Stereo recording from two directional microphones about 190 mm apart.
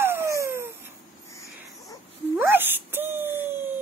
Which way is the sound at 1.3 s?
15° left (ahead or behind).